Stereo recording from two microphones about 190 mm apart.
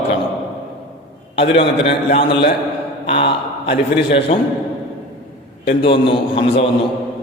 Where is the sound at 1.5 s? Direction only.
30° left (ahead or behind).